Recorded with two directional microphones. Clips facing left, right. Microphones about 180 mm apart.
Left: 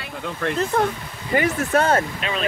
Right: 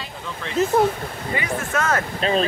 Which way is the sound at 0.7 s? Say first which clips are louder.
Right 4 dB; 5° right (ahead or behind).